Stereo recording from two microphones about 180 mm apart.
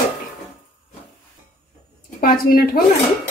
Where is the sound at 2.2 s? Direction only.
55° left (ahead or behind).